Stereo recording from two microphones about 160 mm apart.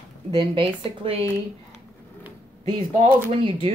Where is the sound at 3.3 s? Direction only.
35° right (ahead or behind).